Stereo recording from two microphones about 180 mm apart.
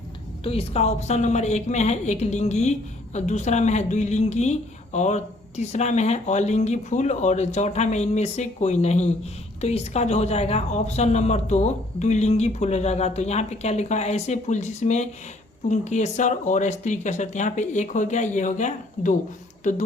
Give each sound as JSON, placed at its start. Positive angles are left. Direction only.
{"t": 0.4, "sound": "speech", "side_deg": 35}